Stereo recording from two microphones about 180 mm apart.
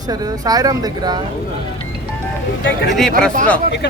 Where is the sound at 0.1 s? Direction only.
20° right (ahead or behind).